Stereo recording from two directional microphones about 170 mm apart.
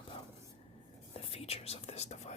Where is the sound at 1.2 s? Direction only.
35° left (ahead or behind).